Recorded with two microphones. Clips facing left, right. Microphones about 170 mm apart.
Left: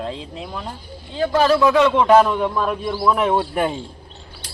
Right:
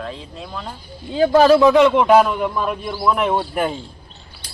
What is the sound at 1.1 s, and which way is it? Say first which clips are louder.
Speech: right 5 dB; 35° right (ahead or behind).